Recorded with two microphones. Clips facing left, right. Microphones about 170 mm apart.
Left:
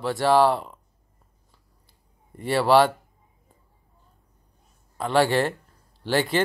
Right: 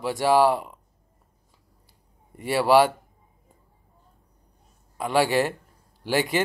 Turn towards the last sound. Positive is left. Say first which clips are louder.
# left 1 dB
turn(degrees=-10)  # may be behind; listen again after turning